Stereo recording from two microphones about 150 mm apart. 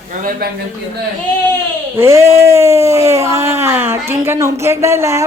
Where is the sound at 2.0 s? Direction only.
20° right (ahead or behind).